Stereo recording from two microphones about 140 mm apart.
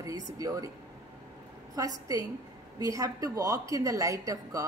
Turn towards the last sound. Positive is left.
turn(degrees=-25)  # may be behind; listen again after turning